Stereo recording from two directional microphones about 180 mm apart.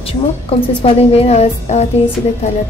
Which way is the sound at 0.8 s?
35° left (ahead or behind).